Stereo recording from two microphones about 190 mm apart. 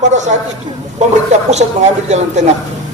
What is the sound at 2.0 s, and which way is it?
Speech, 35° right (ahead or behind).